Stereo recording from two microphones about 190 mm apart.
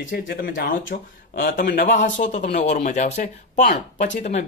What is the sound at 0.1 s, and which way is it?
Speech, 55° left (ahead or behind).